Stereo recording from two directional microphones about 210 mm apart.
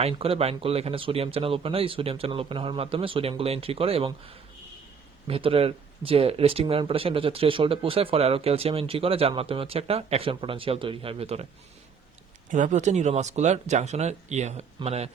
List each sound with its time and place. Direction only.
0.0 s speech: 25° right (ahead or behind)
5.3 s speech: 25° right (ahead or behind)
12.5 s speech: 35° right (ahead or behind)